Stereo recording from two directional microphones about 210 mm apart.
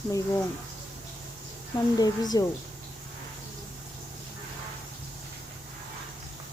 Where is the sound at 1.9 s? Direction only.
20° left (ahead or behind).